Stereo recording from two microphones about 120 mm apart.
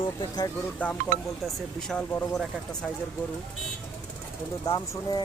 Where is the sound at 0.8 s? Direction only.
10° left (ahead or behind).